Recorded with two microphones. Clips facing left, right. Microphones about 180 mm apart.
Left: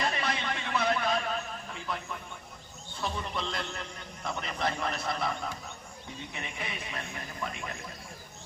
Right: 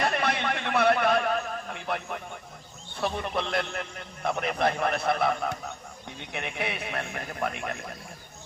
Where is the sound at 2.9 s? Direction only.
60° right (ahead or behind).